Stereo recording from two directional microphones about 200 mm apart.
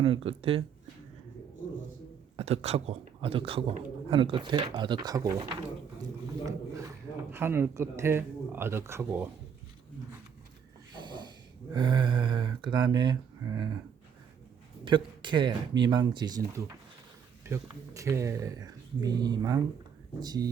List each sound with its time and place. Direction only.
0.0 s a man's voice: 25° right (ahead or behind)
2.3 s a man's voice: 30° right (ahead or behind); by 9.3 s 10° right (ahead or behind)
10.9 s snort: 20° right (ahead or behind)
11.7 s a man's voice: 20° right (ahead or behind)
14.8 s a man's voice: 25° right (ahead or behind)